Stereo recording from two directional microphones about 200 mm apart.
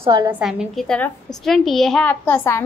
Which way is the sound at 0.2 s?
5° right (ahead or behind).